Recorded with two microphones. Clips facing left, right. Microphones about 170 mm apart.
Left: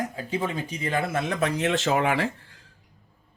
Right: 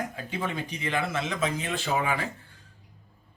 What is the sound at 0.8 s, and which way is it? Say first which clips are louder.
Speech: left 3 dB; 45° left (ahead or behind).